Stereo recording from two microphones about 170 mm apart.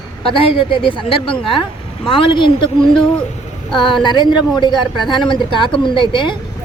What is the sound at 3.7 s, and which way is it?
A woman's voice, 30° left (ahead or behind).